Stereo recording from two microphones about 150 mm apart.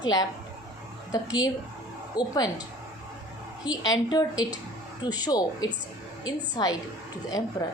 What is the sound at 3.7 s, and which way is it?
A woman's voice, 25° left (ahead or behind).